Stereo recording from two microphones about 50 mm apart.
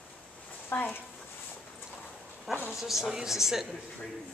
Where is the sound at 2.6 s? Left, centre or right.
Centre.